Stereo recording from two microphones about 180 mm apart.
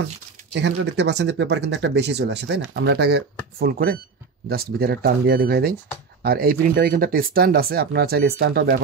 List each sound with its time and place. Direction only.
0.5 s speech: 75° right (ahead or behind)
3.5 s speech: 55° right (ahead or behind)